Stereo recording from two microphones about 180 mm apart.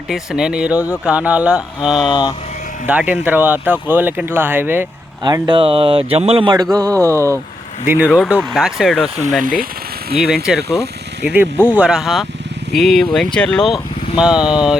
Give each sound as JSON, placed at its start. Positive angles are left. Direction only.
{"t": 0.1, "sound": "speech", "side_deg": -5}
{"t": 2.0, "sound": "speech", "side_deg": 25}
{"t": 2.8, "sound": "speech", "side_deg": -10}
{"t": 5.2, "sound": "speech", "side_deg": -25}
{"t": 9.4, "sound": "speech", "side_deg": -50}
{"t": 10.2, "sound": "speech", "side_deg": 0}